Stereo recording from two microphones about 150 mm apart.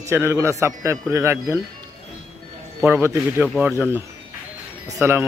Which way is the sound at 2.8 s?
15° right (ahead or behind).